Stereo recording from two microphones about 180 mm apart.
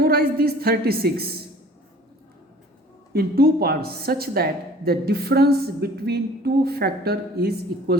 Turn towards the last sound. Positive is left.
turn(degrees=-60)  # may be behind; listen again after turning